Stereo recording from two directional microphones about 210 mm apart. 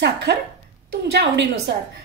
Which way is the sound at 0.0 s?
55° right (ahead or behind).